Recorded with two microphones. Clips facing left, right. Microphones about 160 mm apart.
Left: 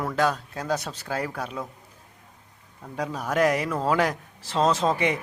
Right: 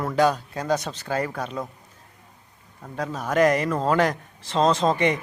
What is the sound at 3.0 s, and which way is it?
A man's voice, 10° left (ahead or behind).